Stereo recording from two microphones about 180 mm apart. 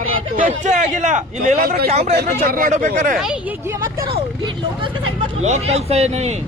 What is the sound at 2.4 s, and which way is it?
Speech, 50° right (ahead or behind).